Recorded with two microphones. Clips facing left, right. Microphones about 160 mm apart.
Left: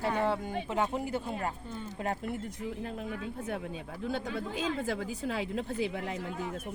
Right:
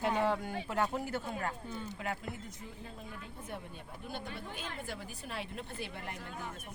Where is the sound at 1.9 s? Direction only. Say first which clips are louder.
Left 10 dB; 40° left (ahead or behind).